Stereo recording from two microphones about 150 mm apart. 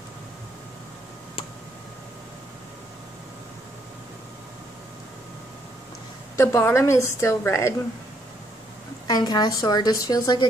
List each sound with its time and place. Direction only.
6.3 s a woman's voice: 15° left (ahead or behind)
9.0 s a woman's voice: 25° left (ahead or behind)